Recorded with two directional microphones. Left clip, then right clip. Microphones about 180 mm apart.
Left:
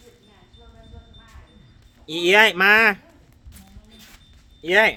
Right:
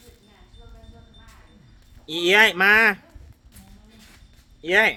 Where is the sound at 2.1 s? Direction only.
5° left (ahead or behind).